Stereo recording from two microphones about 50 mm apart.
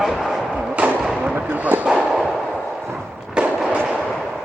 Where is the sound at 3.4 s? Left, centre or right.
Centre.